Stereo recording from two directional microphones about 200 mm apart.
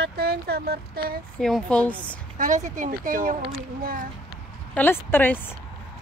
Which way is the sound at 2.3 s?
40° right (ahead or behind).